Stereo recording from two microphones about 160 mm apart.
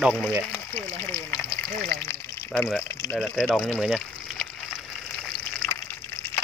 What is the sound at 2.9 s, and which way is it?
Speech, 10° left (ahead or behind).